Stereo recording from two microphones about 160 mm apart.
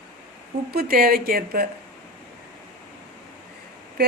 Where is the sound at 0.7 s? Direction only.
65° right (ahead or behind).